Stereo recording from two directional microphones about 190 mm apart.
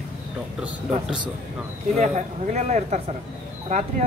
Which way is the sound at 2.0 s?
40° right (ahead or behind).